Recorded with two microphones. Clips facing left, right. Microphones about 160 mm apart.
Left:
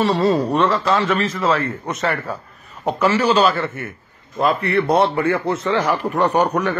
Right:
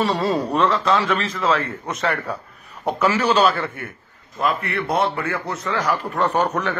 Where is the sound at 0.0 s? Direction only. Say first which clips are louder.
Left 4 dB; centre (ahead or behind).